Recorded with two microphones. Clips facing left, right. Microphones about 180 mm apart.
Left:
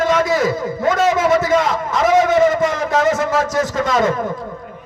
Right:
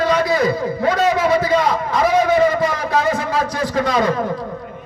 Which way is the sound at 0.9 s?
90° left.